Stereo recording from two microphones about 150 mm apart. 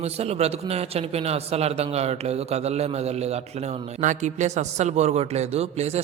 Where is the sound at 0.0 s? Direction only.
45° right (ahead or behind).